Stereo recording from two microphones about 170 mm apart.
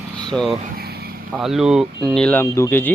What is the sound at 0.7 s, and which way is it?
Vehicle, 65° right (ahead or behind).